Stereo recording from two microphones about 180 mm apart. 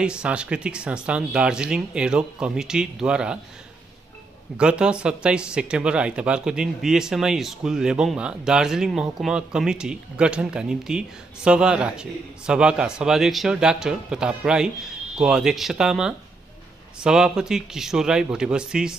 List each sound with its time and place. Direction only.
0.0 s speech: 5° right (ahead or behind)
4.6 s speech: 5° right (ahead or behind)